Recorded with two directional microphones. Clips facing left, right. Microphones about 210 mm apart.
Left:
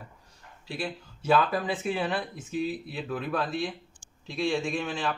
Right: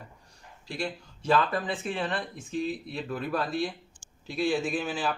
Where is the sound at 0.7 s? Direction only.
5° left (ahead or behind).